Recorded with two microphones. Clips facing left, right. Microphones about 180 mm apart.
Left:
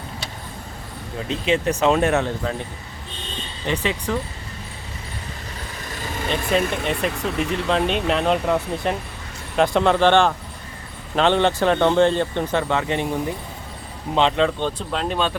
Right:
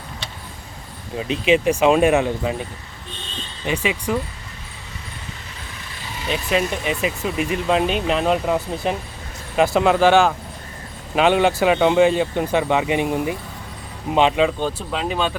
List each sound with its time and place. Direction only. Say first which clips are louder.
1.3 s speech: right 4 dB; 15° right (ahead or behind)
3.7 s speech: right 1 dB; 10° right (ahead or behind)
6.0 s vehicle: left 1 dB; 50° left (ahead or behind)
6.5 s speech: even; 5° right (ahead or behind)